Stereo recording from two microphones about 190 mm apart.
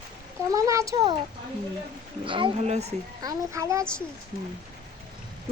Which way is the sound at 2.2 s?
25° right (ahead or behind).